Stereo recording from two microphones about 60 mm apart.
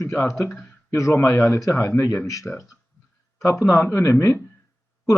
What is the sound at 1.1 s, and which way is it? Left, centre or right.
Speech, left.